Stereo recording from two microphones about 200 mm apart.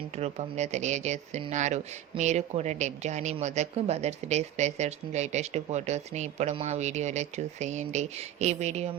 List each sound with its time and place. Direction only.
0.2 s speech: 35° right (ahead or behind)